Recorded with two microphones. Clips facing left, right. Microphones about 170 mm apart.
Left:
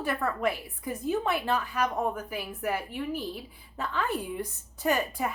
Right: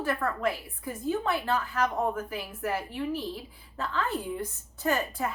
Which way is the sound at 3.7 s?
15° left (ahead or behind).